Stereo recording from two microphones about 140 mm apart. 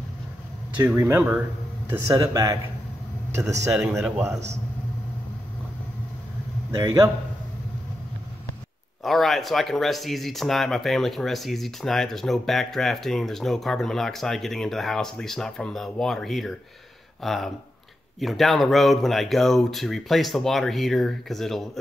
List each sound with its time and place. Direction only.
0.7 s speech: 20° right (ahead or behind)
3.7 s speech: 5° right (ahead or behind)
6.8 s speech: 25° right (ahead or behind)
9.0 s speech: centre (ahead or behind)